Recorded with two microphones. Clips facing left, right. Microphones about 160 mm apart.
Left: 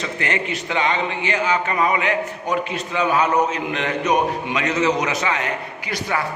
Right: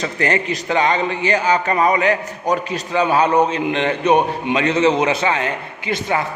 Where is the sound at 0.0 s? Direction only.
40° right (ahead or behind).